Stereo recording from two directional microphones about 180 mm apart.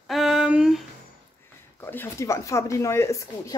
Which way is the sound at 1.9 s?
15° left (ahead or behind).